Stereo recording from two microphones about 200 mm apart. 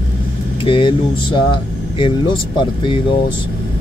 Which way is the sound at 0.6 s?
25° left (ahead or behind).